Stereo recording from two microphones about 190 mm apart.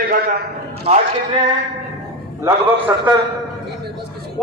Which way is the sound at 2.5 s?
15° right (ahead or behind).